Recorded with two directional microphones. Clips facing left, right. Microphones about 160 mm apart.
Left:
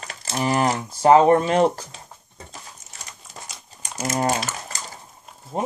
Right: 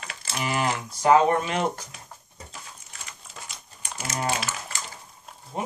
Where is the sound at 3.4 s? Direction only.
40° left (ahead or behind).